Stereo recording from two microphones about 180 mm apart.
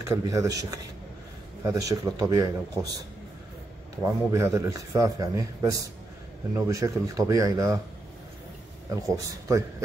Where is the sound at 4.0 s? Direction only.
15° right (ahead or behind).